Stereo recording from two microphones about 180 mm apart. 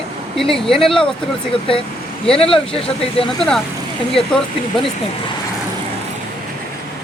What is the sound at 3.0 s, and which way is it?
Speech, 30° left (ahead or behind).